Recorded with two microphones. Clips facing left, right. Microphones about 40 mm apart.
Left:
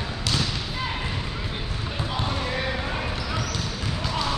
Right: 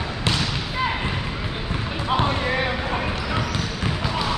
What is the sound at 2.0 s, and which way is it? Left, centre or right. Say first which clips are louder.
Basketball bounce: right 7 dB; right.